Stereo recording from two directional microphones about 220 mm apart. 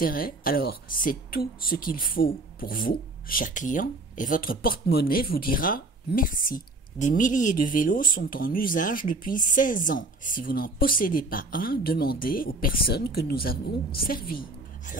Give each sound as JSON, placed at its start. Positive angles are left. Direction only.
{"t": 0.0, "sound": "speech", "side_deg": 40}